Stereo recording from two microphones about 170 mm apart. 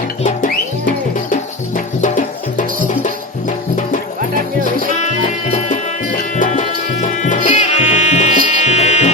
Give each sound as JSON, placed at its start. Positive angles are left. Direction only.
{"t": 1.3, "sound": "music", "side_deg": 50}
{"t": 5.0, "sound": "music", "side_deg": 45}